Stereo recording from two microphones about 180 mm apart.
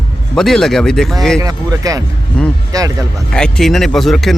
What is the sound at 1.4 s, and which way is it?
Speech, 20° right (ahead or behind).